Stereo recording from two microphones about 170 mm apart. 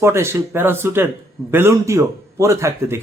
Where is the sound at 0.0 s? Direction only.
15° right (ahead or behind).